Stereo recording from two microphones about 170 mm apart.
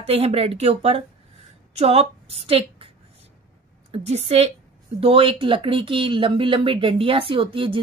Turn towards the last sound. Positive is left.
turn(degrees=-30)  # may be behind; listen again after turning